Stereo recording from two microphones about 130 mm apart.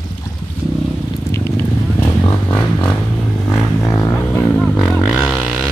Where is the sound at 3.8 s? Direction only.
25° left (ahead or behind).